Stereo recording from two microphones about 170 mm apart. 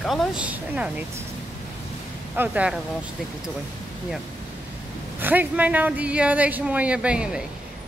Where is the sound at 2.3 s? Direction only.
10° right (ahead or behind).